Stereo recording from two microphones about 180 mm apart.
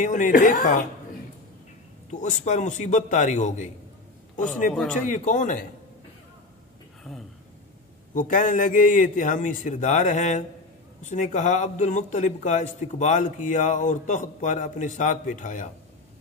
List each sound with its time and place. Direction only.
0.0 s a man's voice: 45° left (ahead or behind)
2.0 s a man's voice: 45° left (ahead or behind)
5.0 s a man's voice: 45° left (ahead or behind)
8.1 s a man's voice: 45° left (ahead or behind)